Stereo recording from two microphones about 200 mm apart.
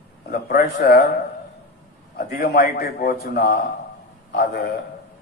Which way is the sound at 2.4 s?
50° left (ahead or behind).